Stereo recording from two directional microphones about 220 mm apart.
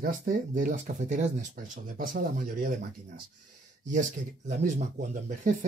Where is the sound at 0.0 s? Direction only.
40° right (ahead or behind).